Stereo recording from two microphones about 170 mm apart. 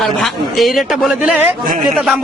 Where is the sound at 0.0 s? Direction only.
Centre (ahead or behind).